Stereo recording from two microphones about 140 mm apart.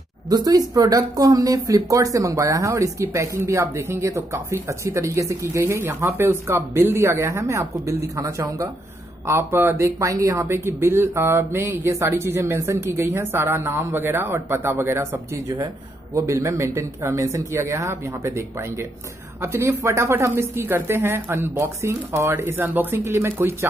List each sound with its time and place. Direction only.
0.3 s speech: 25° right (ahead or behind)